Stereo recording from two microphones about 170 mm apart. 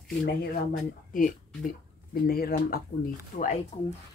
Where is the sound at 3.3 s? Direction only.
45° left (ahead or behind).